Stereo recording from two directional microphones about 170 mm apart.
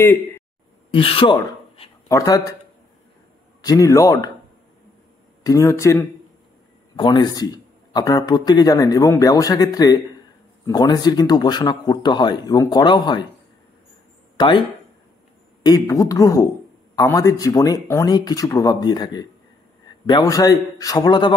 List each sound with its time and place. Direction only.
0.9 s speech: 30° left (ahead or behind)
3.6 s speech: 20° left (ahead or behind)
5.4 s speech: 20° left (ahead or behind)
7.0 s speech: 25° left (ahead or behind)
14.3 s a sound: 25° left (ahead or behind)
15.6 s speech: 20° left (ahead or behind)